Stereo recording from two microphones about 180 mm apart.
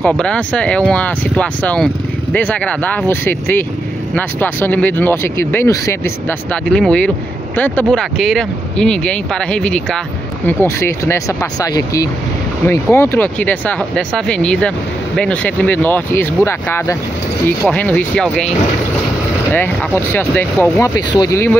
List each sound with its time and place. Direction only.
0.1 s speech: 5° left (ahead or behind)
19.5 s speech: 10° left (ahead or behind)